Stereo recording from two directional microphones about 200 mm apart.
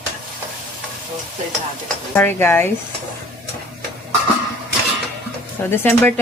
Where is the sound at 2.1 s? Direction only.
10° left (ahead or behind).